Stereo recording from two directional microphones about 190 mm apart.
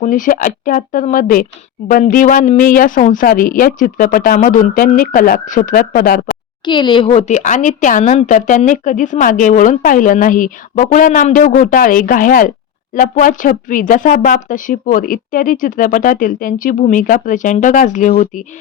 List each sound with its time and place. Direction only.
0.0 s speech: 45° left (ahead or behind)
6.7 s speech: 25° left (ahead or behind); by 18.4 s 45° left (ahead or behind)